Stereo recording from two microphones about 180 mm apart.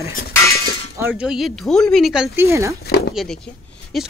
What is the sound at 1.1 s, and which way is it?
Speech, centre (ahead or behind).